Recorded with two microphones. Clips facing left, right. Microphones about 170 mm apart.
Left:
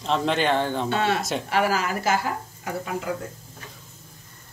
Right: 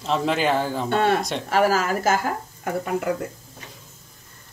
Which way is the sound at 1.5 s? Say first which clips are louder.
Right 4 dB; 40° right (ahead or behind).